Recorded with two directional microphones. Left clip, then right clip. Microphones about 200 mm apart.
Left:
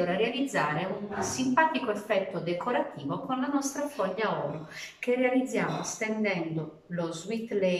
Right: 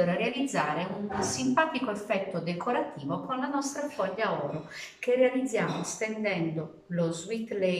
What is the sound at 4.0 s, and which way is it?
A woman's voice, centre (ahead or behind).